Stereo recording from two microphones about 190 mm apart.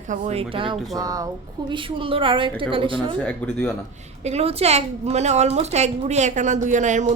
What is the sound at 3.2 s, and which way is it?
Speech, 5° left (ahead or behind).